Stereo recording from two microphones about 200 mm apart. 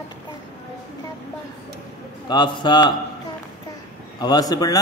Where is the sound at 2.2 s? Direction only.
20° left (ahead or behind).